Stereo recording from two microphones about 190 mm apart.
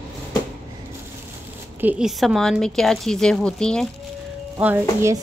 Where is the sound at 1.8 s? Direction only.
5° right (ahead or behind).